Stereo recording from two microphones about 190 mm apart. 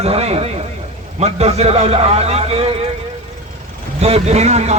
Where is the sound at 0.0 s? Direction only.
35° right (ahead or behind).